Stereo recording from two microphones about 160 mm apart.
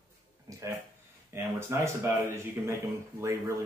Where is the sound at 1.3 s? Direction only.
15° right (ahead or behind).